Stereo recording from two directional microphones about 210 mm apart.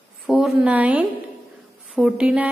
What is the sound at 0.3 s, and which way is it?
A woman's voice, 5° right (ahead or behind).